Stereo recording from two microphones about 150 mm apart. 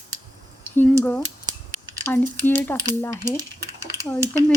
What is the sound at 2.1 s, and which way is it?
Speech, 10° left (ahead or behind).